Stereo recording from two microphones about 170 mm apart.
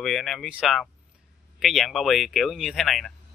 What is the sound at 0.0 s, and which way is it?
Speech, centre (ahead or behind).